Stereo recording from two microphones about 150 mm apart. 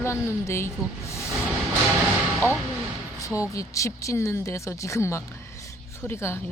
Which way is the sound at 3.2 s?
20° left (ahead or behind).